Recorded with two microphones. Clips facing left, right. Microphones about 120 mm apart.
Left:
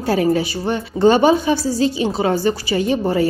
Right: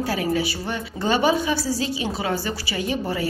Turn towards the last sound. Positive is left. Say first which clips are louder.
# left 7 dB
turn(degrees=35)  # may be behind; listen again after turning